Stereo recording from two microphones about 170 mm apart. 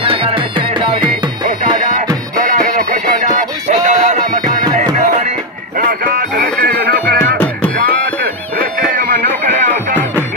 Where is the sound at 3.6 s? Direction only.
45° right (ahead or behind).